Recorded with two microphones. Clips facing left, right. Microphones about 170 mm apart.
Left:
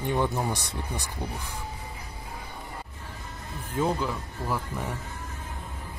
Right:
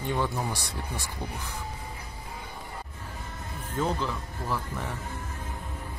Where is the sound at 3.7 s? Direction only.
10° left (ahead or behind).